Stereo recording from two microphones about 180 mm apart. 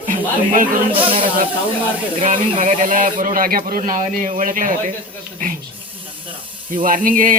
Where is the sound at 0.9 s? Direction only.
30° right (ahead or behind).